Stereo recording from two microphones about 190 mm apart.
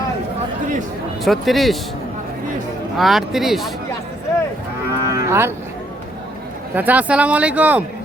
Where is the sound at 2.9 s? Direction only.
Centre (ahead or behind).